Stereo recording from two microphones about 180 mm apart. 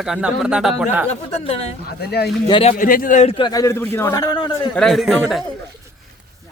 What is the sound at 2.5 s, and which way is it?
Speech, 30° left (ahead or behind).